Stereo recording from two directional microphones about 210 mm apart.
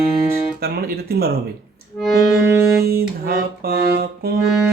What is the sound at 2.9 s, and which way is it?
Music, 45° right (ahead or behind).